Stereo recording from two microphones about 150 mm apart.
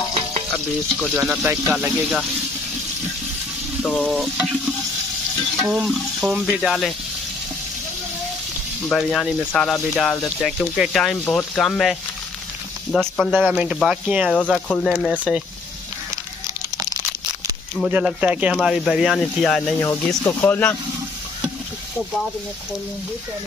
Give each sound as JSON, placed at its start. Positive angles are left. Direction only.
{"t": 1.1, "sound": "speech", "side_deg": -10}
{"t": 3.8, "sound": "speech", "side_deg": 0}
{"t": 5.6, "sound": "speech", "side_deg": 0}
{"t": 8.9, "sound": "speech", "side_deg": 5}
{"t": 17.8, "sound": "speech", "side_deg": -5}
{"t": 19.8, "sound": "speech", "side_deg": 20}